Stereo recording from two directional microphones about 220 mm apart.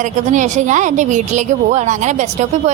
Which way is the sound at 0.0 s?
35° right (ahead or behind).